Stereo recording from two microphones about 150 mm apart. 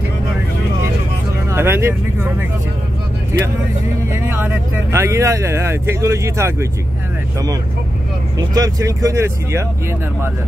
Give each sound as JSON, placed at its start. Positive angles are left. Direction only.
{"t": 1.5, "sound": "speech", "side_deg": -15}
{"t": 4.1, "sound": "speech", "side_deg": -15}
{"t": 8.4, "sound": "speech", "side_deg": -25}